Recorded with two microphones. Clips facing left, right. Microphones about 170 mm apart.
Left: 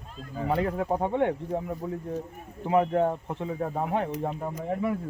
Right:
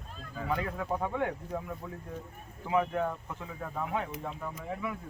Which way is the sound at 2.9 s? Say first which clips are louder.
Left 7 dB; 35° left (ahead or behind).